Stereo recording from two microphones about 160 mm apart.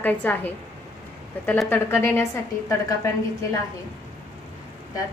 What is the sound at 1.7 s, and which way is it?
A woman's voice, 15° left (ahead or behind).